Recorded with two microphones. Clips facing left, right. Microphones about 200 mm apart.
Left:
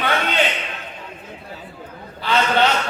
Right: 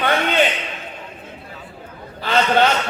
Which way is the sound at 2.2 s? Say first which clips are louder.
Right 2 dB; 45° right (ahead or behind).